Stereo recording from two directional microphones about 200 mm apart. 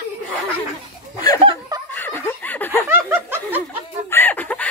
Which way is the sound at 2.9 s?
10° right (ahead or behind).